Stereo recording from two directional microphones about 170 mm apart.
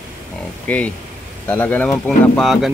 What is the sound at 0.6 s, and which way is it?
Speech, 10° left (ahead or behind).